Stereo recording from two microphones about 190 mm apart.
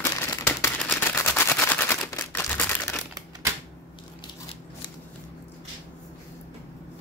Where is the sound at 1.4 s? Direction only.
10° left (ahead or behind).